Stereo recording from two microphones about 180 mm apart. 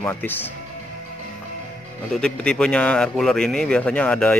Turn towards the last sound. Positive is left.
turn(degrees=5)  # may be behind; listen again after turning